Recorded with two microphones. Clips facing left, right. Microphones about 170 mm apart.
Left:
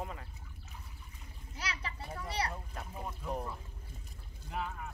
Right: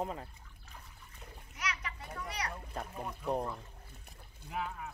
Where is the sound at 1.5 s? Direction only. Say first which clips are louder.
Right 1 dB; 30° left (ahead or behind).